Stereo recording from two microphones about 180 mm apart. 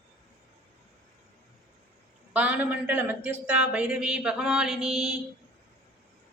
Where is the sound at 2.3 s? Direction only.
10° right (ahead or behind).